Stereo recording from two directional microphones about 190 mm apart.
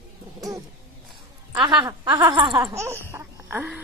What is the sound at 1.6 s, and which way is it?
A woman's voice, 25° right (ahead or behind).